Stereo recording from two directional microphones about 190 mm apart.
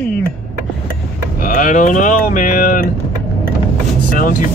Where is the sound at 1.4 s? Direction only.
45° left (ahead or behind).